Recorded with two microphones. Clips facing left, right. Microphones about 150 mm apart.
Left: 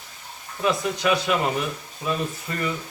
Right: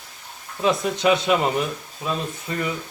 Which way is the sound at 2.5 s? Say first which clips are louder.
Right 6 dB; 20° right (ahead or behind).